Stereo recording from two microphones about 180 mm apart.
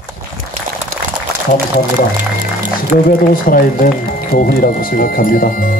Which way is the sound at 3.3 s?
50° left (ahead or behind).